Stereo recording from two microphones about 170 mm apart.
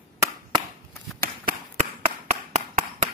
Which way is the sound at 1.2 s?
55° right (ahead or behind).